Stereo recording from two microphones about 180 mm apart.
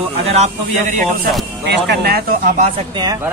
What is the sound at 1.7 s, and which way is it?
Speech, 65° right (ahead or behind).